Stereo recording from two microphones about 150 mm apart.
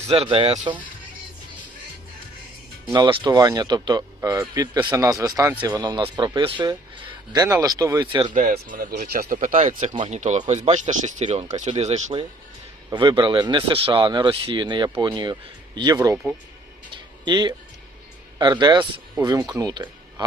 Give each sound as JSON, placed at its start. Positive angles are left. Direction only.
{"t": 0.1, "sound": "speech", "side_deg": -40}
{"t": 2.9, "sound": "speech", "side_deg": -30}
{"t": 8.3, "sound": "speech", "side_deg": -55}
{"t": 9.0, "sound": "speech", "side_deg": -70}
{"t": 12.9, "sound": "speech", "side_deg": -30}
{"t": 17.2, "sound": "speech", "side_deg": -30}